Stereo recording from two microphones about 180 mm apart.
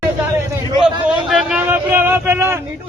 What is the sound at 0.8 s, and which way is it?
A man's voice, 5° right (ahead or behind).